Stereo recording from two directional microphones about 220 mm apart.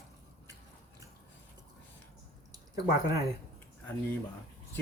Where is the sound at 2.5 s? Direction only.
15° right (ahead or behind).